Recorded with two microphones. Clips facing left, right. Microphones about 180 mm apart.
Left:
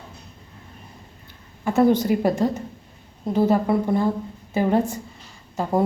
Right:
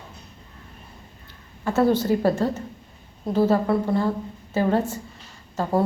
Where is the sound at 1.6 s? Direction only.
15° left (ahead or behind).